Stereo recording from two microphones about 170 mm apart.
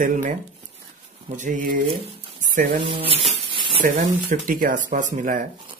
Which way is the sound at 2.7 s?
35° right (ahead or behind).